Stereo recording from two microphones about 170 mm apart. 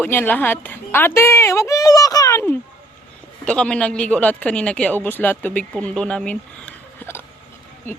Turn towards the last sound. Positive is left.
turn(degrees=10)  # may be behind; listen again after turning